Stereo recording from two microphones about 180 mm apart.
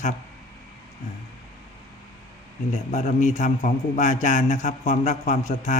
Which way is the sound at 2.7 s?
40° left (ahead or behind).